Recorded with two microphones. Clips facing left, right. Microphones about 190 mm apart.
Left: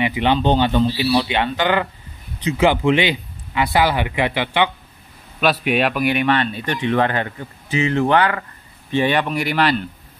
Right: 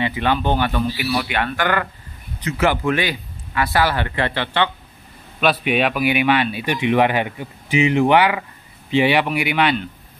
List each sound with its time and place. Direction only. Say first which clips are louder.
0.0 s speech: left 2 dB; 20° left (ahead or behind)
5.4 s speech: even; centre (ahead or behind)